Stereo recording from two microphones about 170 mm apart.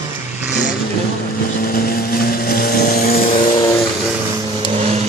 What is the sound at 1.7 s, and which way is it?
Vehicle, 60° left (ahead or behind).